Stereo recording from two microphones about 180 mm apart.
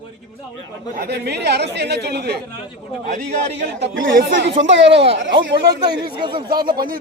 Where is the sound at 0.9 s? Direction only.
65° right (ahead or behind).